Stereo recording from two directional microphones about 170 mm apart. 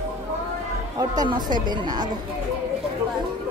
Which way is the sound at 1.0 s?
25° right (ahead or behind).